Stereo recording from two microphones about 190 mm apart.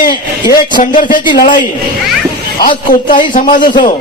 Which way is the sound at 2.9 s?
45° left (ahead or behind).